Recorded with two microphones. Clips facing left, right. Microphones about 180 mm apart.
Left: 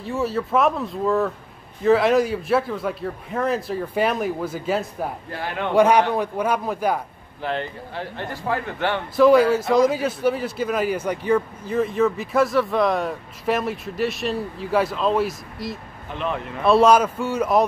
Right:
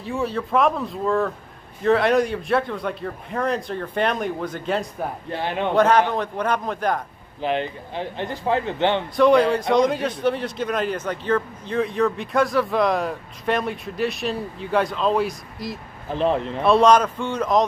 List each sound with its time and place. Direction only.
0.0 s a man's voice: centre (ahead or behind)
5.3 s speech: 20° right (ahead or behind)
5.8 s a man's voice: 10° left (ahead or behind)
7.4 s speech: 20° right (ahead or behind)
9.1 s a man's voice: 5° left (ahead or behind)
16.1 s speech: 35° right (ahead or behind)
16.6 s a man's voice: 5° left (ahead or behind)